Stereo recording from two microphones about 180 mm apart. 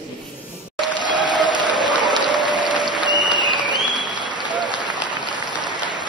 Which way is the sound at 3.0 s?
25° right (ahead or behind).